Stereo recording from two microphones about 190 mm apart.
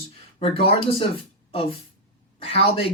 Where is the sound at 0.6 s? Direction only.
30° left (ahead or behind).